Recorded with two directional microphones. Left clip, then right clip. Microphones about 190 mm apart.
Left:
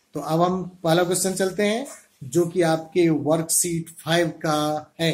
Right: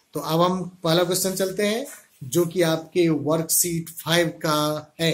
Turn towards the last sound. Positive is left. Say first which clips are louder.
# even
turn(degrees=-5)  # may be behind; listen again after turning